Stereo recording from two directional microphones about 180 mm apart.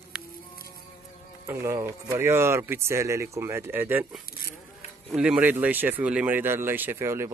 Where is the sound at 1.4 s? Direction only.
15° right (ahead or behind).